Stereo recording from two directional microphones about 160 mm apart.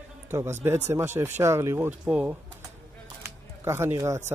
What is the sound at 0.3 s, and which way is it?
A man's voice, 15° right (ahead or behind).